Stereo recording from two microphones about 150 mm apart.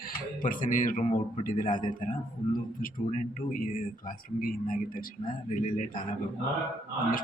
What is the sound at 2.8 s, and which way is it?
Speech, 65° left (ahead or behind).